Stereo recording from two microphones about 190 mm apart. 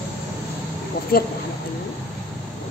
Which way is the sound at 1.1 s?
55° left (ahead or behind).